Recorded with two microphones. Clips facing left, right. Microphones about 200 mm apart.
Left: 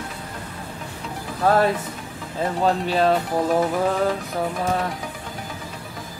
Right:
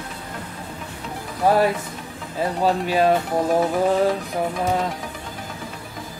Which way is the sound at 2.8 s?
10° right (ahead or behind).